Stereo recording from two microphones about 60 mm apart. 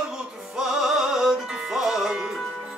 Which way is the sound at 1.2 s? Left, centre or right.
Centre.